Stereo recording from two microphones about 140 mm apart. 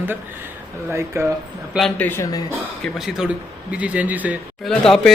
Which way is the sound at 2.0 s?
15° left (ahead or behind).